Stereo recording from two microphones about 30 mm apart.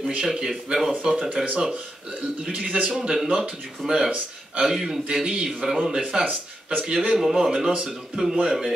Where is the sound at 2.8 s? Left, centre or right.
Right.